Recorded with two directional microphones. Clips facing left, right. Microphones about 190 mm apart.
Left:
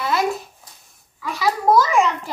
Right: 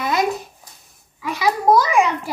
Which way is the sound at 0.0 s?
15° right (ahead or behind).